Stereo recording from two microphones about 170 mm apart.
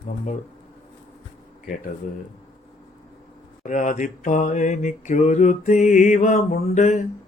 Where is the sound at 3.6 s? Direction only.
50° left (ahead or behind).